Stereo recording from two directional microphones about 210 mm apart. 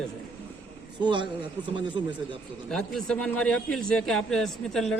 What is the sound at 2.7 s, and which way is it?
A man's voice, centre (ahead or behind).